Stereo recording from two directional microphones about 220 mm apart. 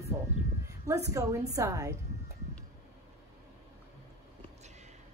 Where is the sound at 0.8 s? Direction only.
15° right (ahead or behind).